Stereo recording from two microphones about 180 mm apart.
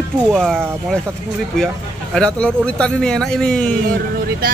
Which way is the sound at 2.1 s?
5° left (ahead or behind).